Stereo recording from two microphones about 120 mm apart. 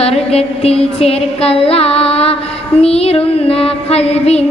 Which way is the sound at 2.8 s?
55° left (ahead or behind).